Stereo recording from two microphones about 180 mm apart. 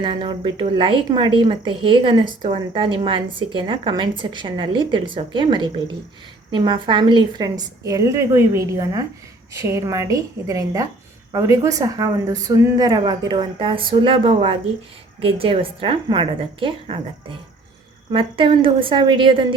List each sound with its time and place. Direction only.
0.0 s a woman's voice: 25° right (ahead or behind)